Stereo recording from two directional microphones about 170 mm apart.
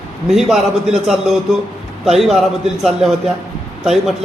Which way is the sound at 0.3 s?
Centre (ahead or behind).